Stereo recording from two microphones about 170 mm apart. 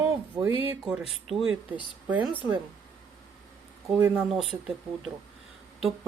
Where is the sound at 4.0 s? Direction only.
10° right (ahead or behind).